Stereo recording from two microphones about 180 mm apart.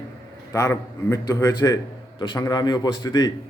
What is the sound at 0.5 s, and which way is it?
Speech, 15° left (ahead or behind).